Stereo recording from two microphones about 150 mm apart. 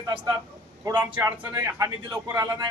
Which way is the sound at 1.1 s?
15° right (ahead or behind).